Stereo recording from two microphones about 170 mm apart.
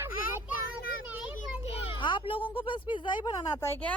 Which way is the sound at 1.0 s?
10° right (ahead or behind).